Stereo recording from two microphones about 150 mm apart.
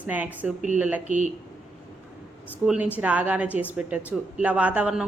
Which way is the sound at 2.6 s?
10° right (ahead or behind).